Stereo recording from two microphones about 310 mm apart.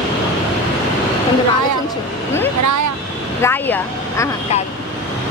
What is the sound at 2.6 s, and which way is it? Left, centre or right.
Speech, right.